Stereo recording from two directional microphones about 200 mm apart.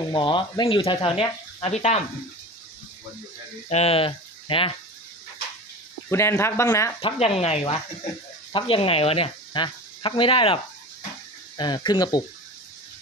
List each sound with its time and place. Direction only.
0.1 s speech: 25° left (ahead or behind)
3.6 s speech: 30° left (ahead or behind)
6.0 s speech: 15° left (ahead or behind)